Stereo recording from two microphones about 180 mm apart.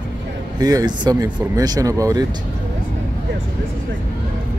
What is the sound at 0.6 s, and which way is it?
Speech, 20° right (ahead or behind).